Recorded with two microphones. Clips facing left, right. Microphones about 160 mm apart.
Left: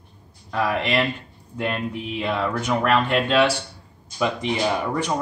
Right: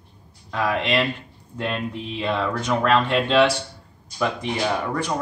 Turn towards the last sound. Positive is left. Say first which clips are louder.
# left 1 dB
turn(degrees=15)  # may be behind; listen again after turning